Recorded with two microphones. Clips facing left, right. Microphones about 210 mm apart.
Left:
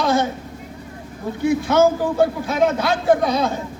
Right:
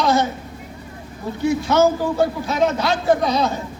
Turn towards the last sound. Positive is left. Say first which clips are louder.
# even
turn(degrees=50)  # may be behind; listen again after turning